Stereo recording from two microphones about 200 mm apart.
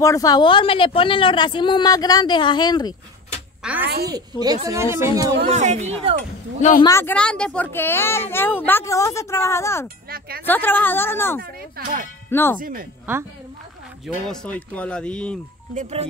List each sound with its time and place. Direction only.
0.0 s a woman's voice: 15° left (ahead or behind)
3.8 s speech: 50° right (ahead or behind)
4.1 s speech: 20° right (ahead or behind)
5.5 s speech: 35° right (ahead or behind)
6.8 s speech: 15° left (ahead or behind)
10.0 s speech: 50° right (ahead or behind)
10.4 s speech: 10° left (ahead or behind)
11.7 s speech: 40° right (ahead or behind)
12.3 s speech: 10° left (ahead or behind)
14.0 s speech: centre (ahead or behind)
15.7 s speech: 35° right (ahead or behind)